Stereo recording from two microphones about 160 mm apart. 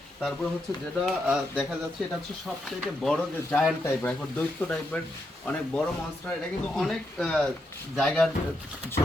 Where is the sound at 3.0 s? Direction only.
Centre (ahead or behind).